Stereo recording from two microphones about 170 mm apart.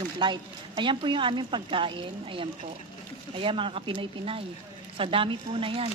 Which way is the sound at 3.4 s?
30° right (ahead or behind).